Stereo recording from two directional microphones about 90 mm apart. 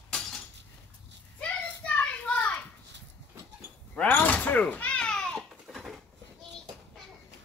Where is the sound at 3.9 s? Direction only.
15° left (ahead or behind); by 5.9 s centre (ahead or behind).